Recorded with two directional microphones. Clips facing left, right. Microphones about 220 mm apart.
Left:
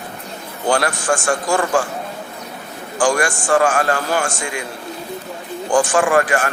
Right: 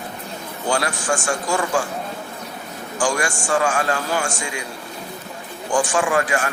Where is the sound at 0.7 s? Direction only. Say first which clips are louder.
Left 4 dB; 55° left (ahead or behind).